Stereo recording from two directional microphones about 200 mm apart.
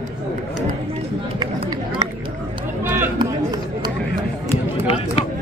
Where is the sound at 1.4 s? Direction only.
25° right (ahead or behind).